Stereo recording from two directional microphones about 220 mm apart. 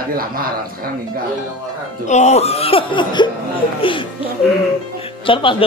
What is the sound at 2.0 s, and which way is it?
Speech, 30° left (ahead or behind).